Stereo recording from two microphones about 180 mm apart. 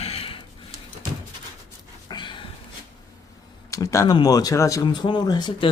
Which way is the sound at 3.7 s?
20° left (ahead or behind).